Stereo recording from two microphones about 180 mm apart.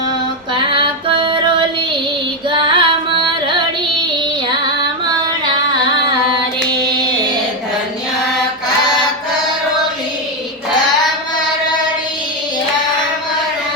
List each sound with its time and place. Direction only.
0.5 s female singing: 25° right (ahead or behind)
2.5 s music: 25° right (ahead or behind)